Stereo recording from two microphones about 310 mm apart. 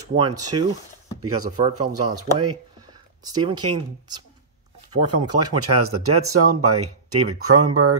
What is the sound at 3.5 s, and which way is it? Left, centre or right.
Speech, right.